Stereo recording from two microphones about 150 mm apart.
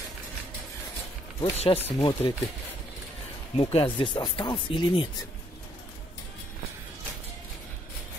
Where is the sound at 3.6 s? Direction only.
35° left (ahead or behind).